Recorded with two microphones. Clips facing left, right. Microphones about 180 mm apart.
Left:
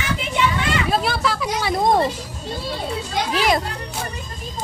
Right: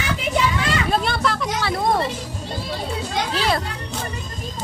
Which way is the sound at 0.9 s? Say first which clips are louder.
Even; 5° left (ahead or behind).